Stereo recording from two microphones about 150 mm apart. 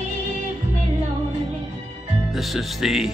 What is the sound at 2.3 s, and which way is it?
Speech, centre (ahead or behind).